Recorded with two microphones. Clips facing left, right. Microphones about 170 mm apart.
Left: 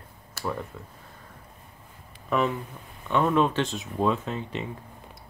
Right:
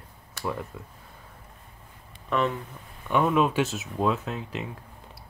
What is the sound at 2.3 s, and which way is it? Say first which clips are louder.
Speech: left 1 dB; centre (ahead or behind).